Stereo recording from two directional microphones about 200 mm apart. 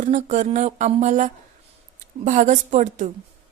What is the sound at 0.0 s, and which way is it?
Speech, 40° right (ahead or behind).